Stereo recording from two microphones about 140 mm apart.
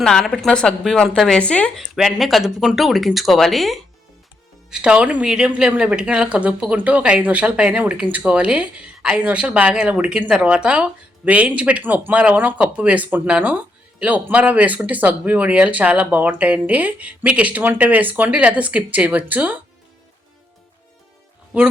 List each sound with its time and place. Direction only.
0.0 s a woman's voice: 5° left (ahead or behind); by 19.6 s 10° right (ahead or behind)
21.5 s speech: 10° right (ahead or behind)